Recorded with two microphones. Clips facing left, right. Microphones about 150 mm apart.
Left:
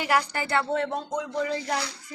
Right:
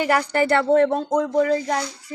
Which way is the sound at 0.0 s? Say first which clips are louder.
Right 6 dB; 55° right (ahead or behind).